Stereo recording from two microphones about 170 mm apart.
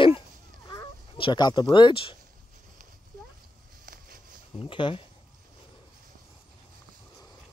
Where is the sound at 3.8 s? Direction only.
55° right (ahead or behind).